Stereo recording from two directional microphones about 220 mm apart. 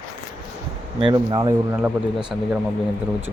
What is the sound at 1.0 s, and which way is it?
Speech, 20° right (ahead or behind).